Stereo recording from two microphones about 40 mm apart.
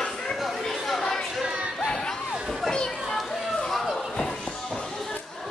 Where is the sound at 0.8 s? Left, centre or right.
Centre.